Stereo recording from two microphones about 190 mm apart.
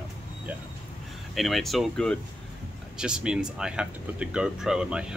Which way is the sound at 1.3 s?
Centre (ahead or behind).